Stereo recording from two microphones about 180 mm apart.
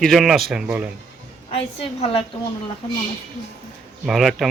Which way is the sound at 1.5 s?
35° left (ahead or behind).